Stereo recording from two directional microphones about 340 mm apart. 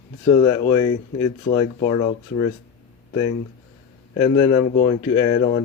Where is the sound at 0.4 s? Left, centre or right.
Centre.